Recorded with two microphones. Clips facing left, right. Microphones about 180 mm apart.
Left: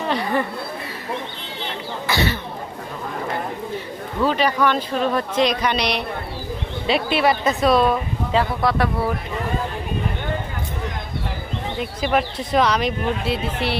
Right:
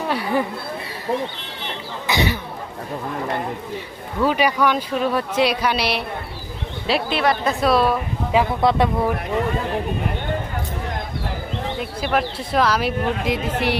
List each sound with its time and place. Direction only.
0.1 s a sound: 10° right (ahead or behind)
2.0 s cough: 15° right (ahead or behind)
4.2 s speech: 10° right (ahead or behind)
8.6 s speech: 20° right (ahead or behind)
11.8 s speech: centre (ahead or behind)